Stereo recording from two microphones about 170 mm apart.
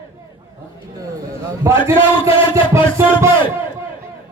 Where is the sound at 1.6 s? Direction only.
15° right (ahead or behind).